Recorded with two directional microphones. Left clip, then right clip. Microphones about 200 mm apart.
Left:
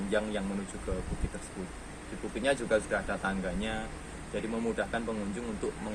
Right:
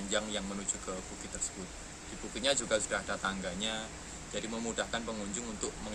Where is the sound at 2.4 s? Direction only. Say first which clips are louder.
Left 3 dB; 15° right (ahead or behind).